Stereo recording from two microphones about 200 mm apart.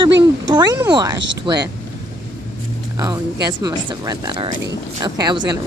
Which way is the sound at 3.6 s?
20° right (ahead or behind).